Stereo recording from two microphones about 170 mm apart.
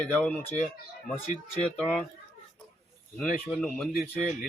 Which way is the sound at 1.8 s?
10° left (ahead or behind).